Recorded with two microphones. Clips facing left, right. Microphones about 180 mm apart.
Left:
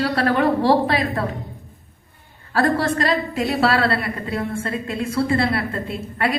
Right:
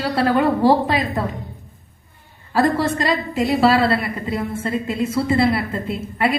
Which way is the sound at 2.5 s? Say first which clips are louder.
Right 1 dB; centre (ahead or behind).